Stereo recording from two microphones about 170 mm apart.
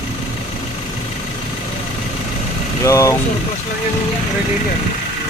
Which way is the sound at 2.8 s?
20° left (ahead or behind).